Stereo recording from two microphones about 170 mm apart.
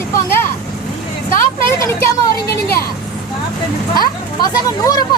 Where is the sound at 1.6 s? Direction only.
15° left (ahead or behind).